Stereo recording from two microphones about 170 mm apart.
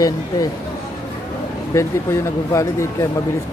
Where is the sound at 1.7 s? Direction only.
15° left (ahead or behind).